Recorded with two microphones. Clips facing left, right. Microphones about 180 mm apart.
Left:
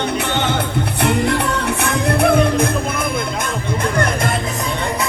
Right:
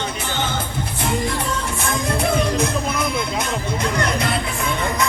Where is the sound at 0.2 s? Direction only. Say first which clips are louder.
Left 5 dB; 65° left (ahead or behind).